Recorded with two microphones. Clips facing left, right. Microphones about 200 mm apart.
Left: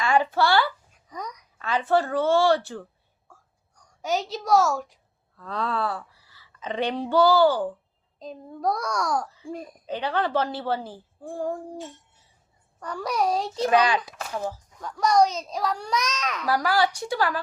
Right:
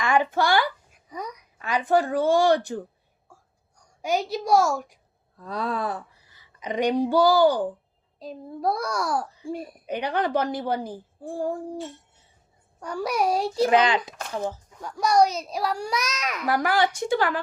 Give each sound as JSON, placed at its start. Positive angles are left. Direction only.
{"t": 0.0, "sound": "a sound", "side_deg": -15}
{"t": 0.3, "sound": "a woman's voice", "side_deg": -15}
{"t": 3.2, "sound": "a sound", "side_deg": -10}
{"t": 5.4, "sound": "a woman's voice", "side_deg": -10}
{"t": 13.7, "sound": "a woman's voice", "side_deg": -20}
{"t": 14.8, "sound": "a woman's voice", "side_deg": -10}
{"t": 16.5, "sound": "a woman's voice", "side_deg": -20}